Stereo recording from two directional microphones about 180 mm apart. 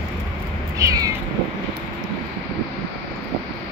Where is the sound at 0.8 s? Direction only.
20° right (ahead or behind).